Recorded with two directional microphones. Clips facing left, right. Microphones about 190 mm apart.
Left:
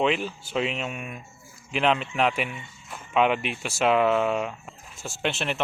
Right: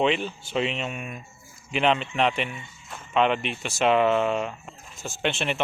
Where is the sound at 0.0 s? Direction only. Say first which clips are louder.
Right 1 dB; 5° left (ahead or behind).